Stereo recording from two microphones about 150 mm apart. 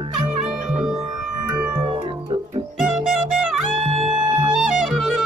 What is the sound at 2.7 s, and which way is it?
Music, centre (ahead or behind).